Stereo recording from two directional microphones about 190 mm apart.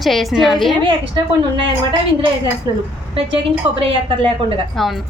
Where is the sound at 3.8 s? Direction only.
30° right (ahead or behind).